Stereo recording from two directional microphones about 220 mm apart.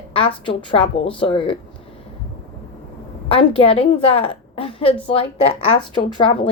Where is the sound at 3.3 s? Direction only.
25° left (ahead or behind).